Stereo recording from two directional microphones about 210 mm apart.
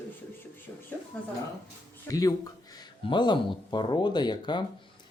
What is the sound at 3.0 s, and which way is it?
Speech, 20° left (ahead or behind).